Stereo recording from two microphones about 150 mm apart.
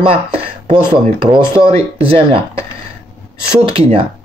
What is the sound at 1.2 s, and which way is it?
Speech, 35° right (ahead or behind).